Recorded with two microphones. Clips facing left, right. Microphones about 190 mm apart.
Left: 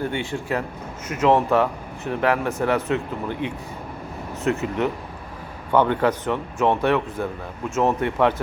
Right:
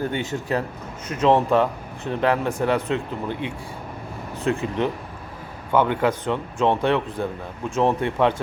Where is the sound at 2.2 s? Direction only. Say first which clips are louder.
Even; 20° right (ahead or behind).